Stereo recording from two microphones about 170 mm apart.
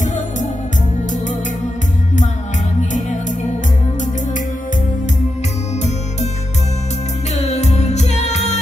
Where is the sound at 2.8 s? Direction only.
45° left (ahead or behind).